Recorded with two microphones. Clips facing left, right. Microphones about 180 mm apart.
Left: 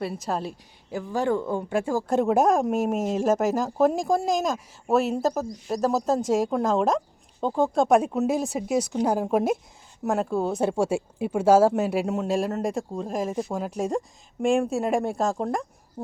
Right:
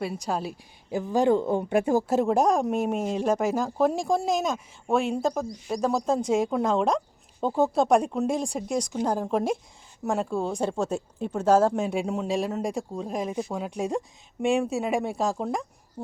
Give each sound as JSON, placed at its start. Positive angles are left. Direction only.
{"t": 0.0, "sound": "speech", "side_deg": 0}
{"t": 0.9, "sound": "speech", "side_deg": -20}
{"t": 2.0, "sound": "speech", "side_deg": 0}